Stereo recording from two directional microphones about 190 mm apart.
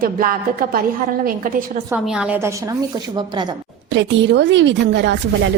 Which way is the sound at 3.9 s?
65° right (ahead or behind).